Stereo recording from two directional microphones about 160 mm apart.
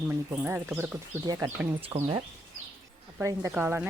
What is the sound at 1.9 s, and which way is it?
Speech, 25° right (ahead or behind).